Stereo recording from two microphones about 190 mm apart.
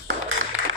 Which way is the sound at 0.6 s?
90° right.